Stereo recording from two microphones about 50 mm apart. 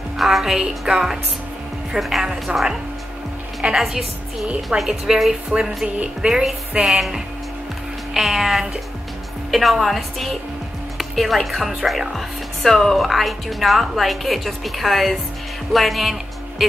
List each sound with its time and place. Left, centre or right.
0.2 s a woman's voice: centre; by 6.4 s right
6.8 s a woman's voice: centre